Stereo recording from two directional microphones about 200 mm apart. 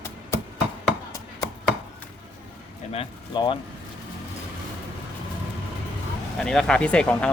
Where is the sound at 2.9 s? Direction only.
25° left (ahead or behind).